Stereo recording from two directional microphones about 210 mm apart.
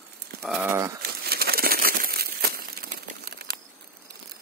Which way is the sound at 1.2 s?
45° right (ahead or behind).